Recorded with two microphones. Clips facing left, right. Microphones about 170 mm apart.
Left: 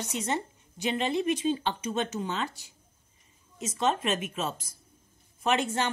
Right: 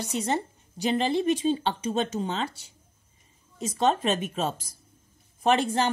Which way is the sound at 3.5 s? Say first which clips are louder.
Right 4 dB; 35° right (ahead or behind).